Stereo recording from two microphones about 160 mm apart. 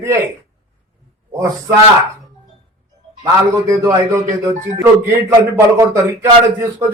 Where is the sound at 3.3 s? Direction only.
15° right (ahead or behind).